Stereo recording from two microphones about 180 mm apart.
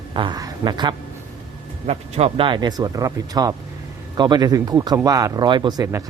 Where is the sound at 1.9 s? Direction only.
35° right (ahead or behind).